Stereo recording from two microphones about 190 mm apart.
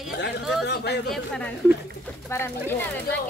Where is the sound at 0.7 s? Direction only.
60° left (ahead or behind).